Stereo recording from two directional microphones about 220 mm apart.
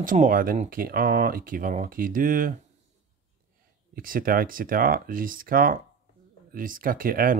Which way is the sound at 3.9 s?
40° right (ahead or behind).